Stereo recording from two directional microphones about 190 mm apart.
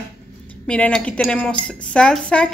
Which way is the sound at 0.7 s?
5° left (ahead or behind).